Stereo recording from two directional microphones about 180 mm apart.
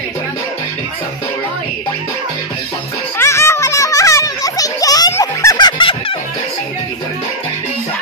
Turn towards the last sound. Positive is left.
turn(degrees=30)  # may be behind; listen again after turning